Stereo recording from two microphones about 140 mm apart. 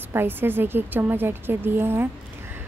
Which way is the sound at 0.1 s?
15° right (ahead or behind).